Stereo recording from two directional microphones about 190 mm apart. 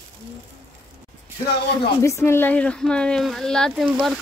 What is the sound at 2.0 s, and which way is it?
Speech, 15° left (ahead or behind).